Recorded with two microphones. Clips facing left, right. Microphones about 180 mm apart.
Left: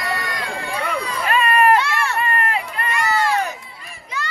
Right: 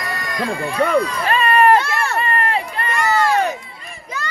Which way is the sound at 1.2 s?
35° right (ahead or behind).